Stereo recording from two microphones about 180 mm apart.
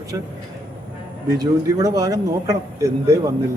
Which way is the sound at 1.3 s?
20° right (ahead or behind).